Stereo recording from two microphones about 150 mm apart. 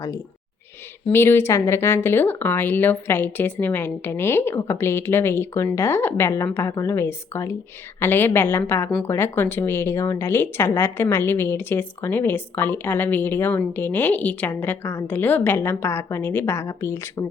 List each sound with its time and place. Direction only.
1.1 s speech: 15° left (ahead or behind)